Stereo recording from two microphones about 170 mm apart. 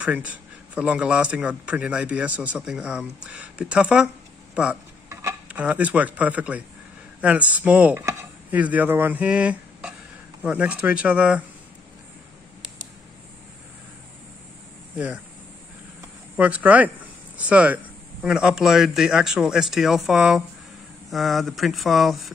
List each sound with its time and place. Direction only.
0.0 s speech: 10° right (ahead or behind)
5.1 s speech: 10° right (ahead or behind)
16.3 s speech: 10° right (ahead or behind)